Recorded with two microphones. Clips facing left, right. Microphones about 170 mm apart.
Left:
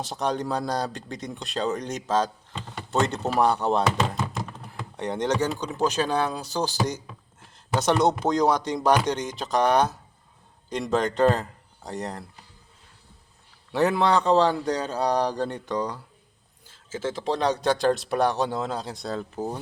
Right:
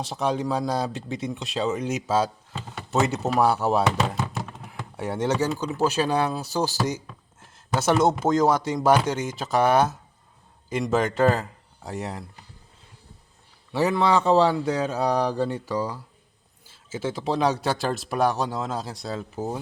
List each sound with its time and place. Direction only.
0.0 s speech: centre (ahead or behind)
13.7 s speech: centre (ahead or behind)